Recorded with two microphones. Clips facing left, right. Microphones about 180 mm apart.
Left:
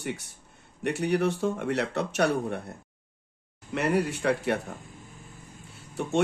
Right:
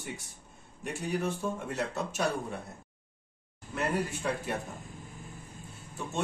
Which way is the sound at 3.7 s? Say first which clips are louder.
Left 6 dB; 75° left (ahead or behind).